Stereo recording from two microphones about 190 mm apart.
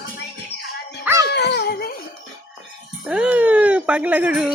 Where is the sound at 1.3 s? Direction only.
60° left (ahead or behind).